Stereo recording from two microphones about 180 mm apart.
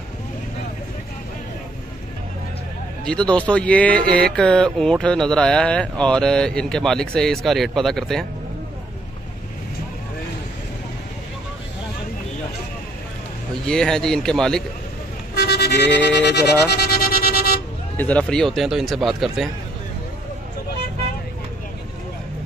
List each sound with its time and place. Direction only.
3.1 s speech: 5° left (ahead or behind)
13.7 s speech: 5° left (ahead or behind)
15.3 s vehicle: 65° left (ahead or behind)
17.9 s speech: 10° left (ahead or behind)